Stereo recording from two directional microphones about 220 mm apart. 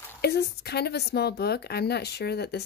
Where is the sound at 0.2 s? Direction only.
45° left (ahead or behind).